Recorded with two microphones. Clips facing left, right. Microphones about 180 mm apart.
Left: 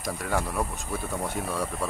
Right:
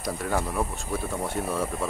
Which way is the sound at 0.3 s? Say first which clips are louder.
Even; centre (ahead or behind).